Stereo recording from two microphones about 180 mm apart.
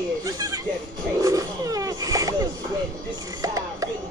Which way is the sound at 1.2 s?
20° right (ahead or behind).